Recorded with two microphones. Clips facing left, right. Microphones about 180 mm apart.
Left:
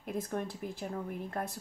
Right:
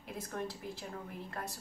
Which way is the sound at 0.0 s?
50° left (ahead or behind).